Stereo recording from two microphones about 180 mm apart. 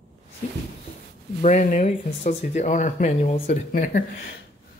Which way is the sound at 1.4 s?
45° left (ahead or behind).